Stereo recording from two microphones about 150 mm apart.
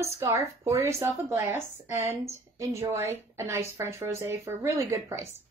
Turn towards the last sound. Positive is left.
turn(degrees=-20)  # may be behind; listen again after turning